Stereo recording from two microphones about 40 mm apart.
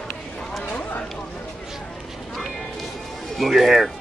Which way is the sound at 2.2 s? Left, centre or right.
Centre.